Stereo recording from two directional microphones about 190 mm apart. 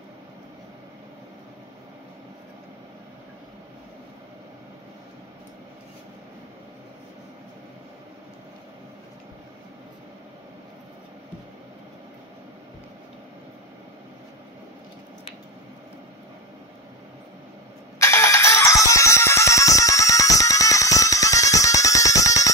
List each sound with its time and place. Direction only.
17.9 s music: 15° left (ahead or behind)